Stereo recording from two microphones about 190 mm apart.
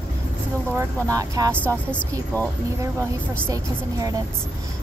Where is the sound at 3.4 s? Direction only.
15° right (ahead or behind).